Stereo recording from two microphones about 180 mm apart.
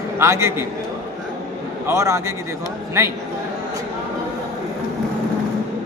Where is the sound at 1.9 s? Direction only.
15° right (ahead or behind).